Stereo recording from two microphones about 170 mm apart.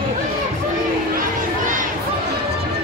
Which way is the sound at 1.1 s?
50° right (ahead or behind).